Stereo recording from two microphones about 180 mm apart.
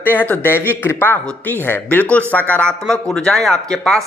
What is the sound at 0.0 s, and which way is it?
Speech, 10° left (ahead or behind).